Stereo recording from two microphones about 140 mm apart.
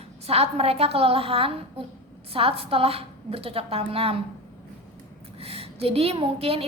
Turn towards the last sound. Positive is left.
turn(degrees=-45)  # may be behind; listen again after turning